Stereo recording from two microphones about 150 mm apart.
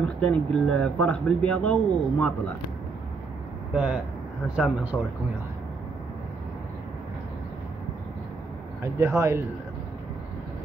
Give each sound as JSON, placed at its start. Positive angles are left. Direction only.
{"t": 0.2, "sound": "speech", "side_deg": 10}
{"t": 3.7, "sound": "speech", "side_deg": -5}
{"t": 4.9, "sound": "a man's voice", "side_deg": 5}
{"t": 8.8, "sound": "speech", "side_deg": -20}